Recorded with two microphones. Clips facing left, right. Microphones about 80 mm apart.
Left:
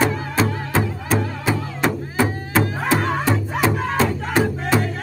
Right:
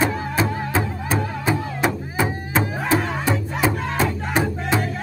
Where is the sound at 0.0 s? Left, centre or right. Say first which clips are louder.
Left 1 dB; centre.